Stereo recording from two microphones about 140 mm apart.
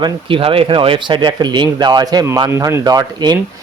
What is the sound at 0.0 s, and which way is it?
Speech, 40° right (ahead or behind).